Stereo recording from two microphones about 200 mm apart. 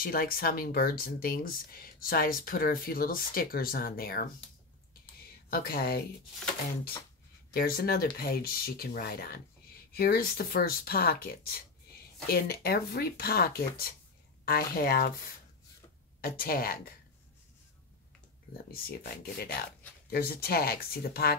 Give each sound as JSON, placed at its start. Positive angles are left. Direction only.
{"t": 0.0, "sound": "speech", "side_deg": 45}
{"t": 5.5, "sound": "speech", "side_deg": 45}
{"t": 7.5, "sound": "speech", "side_deg": 45}
{"t": 16.2, "sound": "speech", "side_deg": 45}
{"t": 18.7, "sound": "speech", "side_deg": 50}